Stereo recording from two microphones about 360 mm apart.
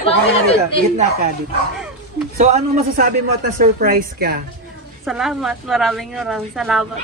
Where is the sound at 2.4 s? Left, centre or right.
Right.